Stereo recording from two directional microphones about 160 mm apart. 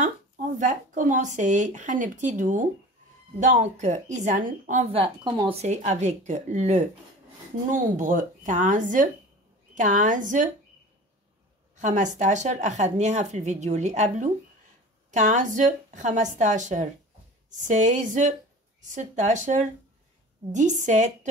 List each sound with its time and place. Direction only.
0.0 s speech: 50° right (ahead or behind)
4.8 s speech: 35° right (ahead or behind); by 10.5 s 55° right (ahead or behind)
11.8 s speech: 50° right (ahead or behind)